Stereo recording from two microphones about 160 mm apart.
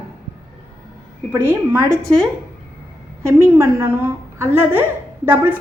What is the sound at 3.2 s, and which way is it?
A woman's voice, 15° right (ahead or behind).